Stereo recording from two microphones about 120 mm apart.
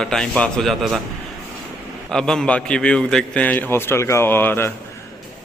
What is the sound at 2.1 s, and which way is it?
A man's voice, 5° left (ahead or behind).